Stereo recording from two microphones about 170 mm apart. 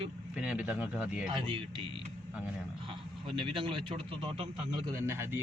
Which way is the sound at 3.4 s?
30° right (ahead or behind).